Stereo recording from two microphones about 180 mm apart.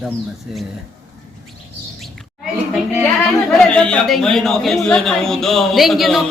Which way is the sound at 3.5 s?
5° left (ahead or behind).